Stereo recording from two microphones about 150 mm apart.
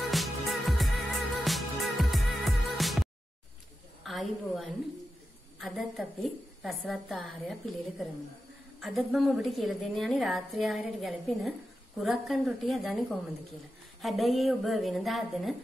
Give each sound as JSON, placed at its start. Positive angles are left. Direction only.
{"t": 0.1, "sound": "music", "side_deg": 0}
{"t": 4.0, "sound": "a woman's voice", "side_deg": 0}
{"t": 8.7, "sound": "a woman's voice", "side_deg": 0}